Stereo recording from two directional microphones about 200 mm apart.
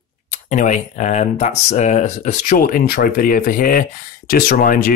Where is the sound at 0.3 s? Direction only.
40° left (ahead or behind).